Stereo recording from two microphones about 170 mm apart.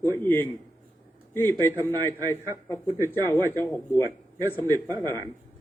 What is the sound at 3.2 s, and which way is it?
Speech, 15° left (ahead or behind).